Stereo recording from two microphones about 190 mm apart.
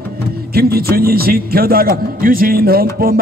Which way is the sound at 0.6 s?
55° right (ahead or behind).